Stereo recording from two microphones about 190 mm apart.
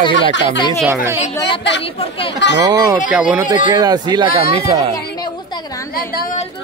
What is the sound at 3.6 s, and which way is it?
Speech, 20° right (ahead or behind).